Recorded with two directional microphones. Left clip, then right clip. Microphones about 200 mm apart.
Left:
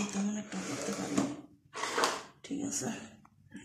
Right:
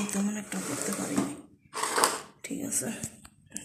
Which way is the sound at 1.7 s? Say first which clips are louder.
Right 5 dB; 45° right (ahead or behind).